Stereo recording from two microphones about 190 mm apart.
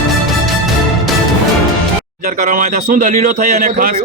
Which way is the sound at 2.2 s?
45° right (ahead or behind).